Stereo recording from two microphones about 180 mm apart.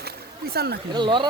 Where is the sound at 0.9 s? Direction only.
25° right (ahead or behind).